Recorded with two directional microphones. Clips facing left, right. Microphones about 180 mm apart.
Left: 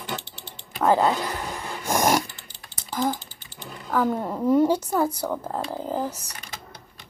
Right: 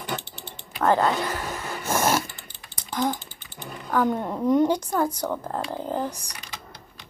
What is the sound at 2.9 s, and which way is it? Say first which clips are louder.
Typing: even; centre (ahead or behind).